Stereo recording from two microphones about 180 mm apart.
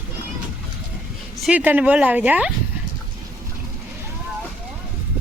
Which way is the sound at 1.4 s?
5° right (ahead or behind).